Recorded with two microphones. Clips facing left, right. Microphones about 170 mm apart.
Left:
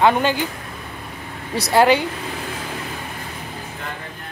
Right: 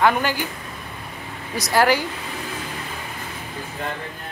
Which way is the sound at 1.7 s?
25° left (ahead or behind).